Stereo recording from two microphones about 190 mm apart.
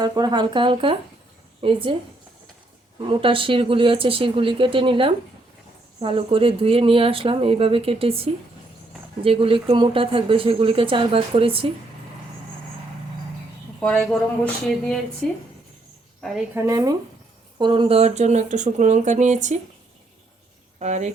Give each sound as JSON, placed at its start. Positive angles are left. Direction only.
{"t": 0.0, "sound": "speech", "side_deg": -20}
{"t": 3.1, "sound": "speech", "side_deg": -25}
{"t": 13.7, "sound": "speech", "side_deg": 5}
{"t": 16.6, "sound": "speech", "side_deg": -15}
{"t": 20.7, "sound": "speech", "side_deg": -35}